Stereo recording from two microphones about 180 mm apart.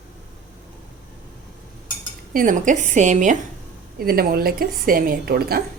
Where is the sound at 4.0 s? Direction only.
55° right (ahead or behind).